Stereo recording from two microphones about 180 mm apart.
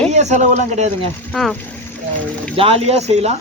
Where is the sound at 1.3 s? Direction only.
5° left (ahead or behind).